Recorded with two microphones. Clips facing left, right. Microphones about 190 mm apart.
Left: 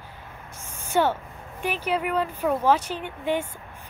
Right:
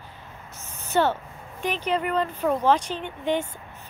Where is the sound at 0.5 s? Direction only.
10° left (ahead or behind).